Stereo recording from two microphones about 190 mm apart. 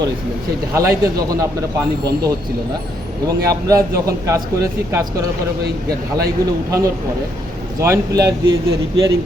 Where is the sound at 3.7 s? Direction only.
15° right (ahead or behind).